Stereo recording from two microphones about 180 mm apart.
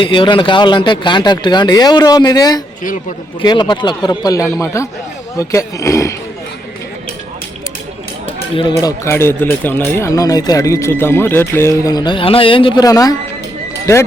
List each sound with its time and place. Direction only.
0.0 s speech: 25° left (ahead or behind)
8.5 s speech: 25° left (ahead or behind)